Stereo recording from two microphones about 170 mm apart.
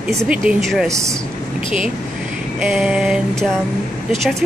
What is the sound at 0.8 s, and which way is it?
Speech, 20° right (ahead or behind).